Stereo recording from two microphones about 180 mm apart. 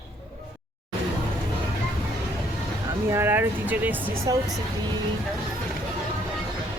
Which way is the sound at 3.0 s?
15° right (ahead or behind).